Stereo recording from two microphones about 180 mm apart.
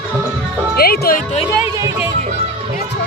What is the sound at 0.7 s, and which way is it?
Speech, 60° left (ahead or behind).